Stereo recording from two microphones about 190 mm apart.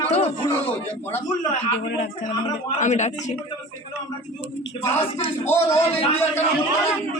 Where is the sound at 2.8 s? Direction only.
40° left (ahead or behind).